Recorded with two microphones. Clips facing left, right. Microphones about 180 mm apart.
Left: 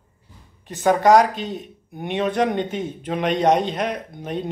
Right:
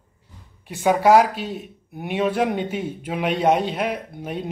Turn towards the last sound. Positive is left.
turn(degrees=-5)  # may be behind; listen again after turning